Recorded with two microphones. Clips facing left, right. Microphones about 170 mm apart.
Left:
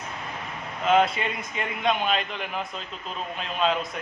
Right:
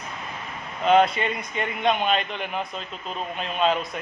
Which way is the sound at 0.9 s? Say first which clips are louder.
Right 3 dB; centre (ahead or behind).